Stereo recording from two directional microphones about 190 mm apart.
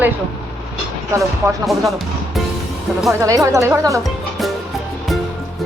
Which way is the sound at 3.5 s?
15° right (ahead or behind).